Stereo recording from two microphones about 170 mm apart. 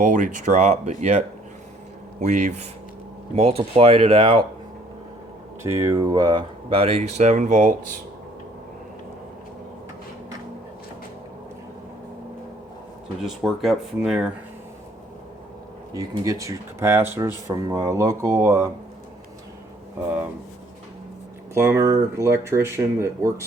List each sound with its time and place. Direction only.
0.0 s speech: 50° right (ahead or behind); by 4.4 s 30° right (ahead or behind)
5.6 s speech: 15° right (ahead or behind); by 7.9 s 50° right (ahead or behind)
13.2 s speech: centre (ahead or behind)
15.9 s speech: 20° right (ahead or behind)
21.5 s speech: 15° right (ahead or behind)